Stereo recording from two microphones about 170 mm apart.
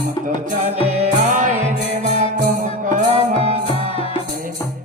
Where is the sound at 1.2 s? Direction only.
50° right (ahead or behind).